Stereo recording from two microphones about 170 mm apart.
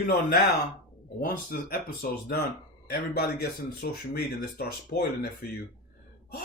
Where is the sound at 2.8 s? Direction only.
65° left (ahead or behind).